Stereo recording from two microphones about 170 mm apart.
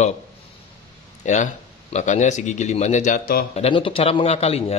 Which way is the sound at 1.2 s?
45° left (ahead or behind).